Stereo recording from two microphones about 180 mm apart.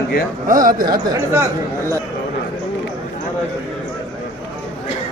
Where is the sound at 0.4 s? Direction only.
50° right (ahead or behind).